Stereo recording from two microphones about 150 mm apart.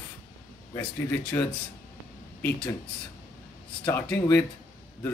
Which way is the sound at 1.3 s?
15° left (ahead or behind).